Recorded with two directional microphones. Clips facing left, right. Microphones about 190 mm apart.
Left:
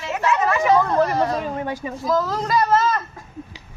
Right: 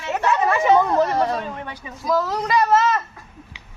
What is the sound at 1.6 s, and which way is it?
Speech, 40° left (ahead or behind).